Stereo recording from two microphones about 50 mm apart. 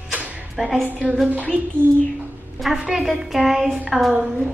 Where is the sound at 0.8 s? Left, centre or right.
Right.